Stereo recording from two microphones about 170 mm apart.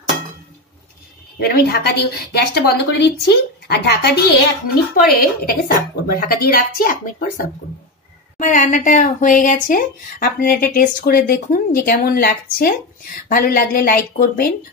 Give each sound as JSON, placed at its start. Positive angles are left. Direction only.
{"t": 1.4, "sound": "a woman's voice", "side_deg": 70}
{"t": 4.9, "sound": "speech", "side_deg": 55}